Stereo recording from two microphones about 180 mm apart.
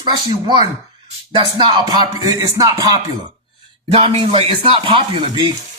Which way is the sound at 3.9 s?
35° right (ahead or behind).